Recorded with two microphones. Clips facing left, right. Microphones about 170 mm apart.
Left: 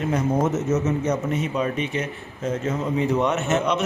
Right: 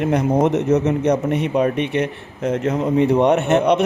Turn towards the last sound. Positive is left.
turn(degrees=-60)  # may be behind; listen again after turning